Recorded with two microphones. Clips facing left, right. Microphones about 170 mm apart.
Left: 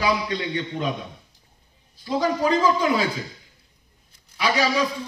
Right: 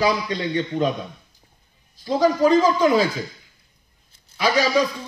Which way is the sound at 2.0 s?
35° right (ahead or behind).